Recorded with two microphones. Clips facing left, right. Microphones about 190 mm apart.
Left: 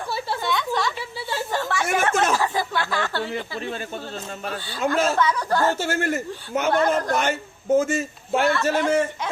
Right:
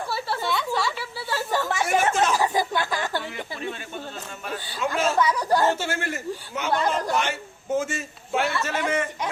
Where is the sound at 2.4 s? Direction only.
15° right (ahead or behind).